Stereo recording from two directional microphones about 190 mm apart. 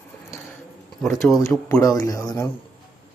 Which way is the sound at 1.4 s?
15° left (ahead or behind).